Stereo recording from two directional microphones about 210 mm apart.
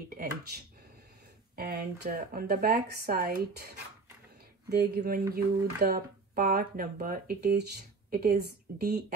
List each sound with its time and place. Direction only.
0.1 s speech: 40° right (ahead or behind)